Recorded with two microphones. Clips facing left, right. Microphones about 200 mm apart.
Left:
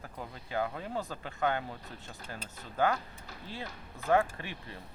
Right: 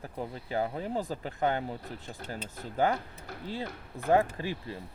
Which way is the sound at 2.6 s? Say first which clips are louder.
Right 2 dB; 15° right (ahead or behind).